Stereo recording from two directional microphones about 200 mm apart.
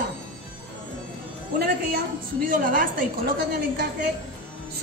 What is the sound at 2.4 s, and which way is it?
A man's voice, 40° right (ahead or behind).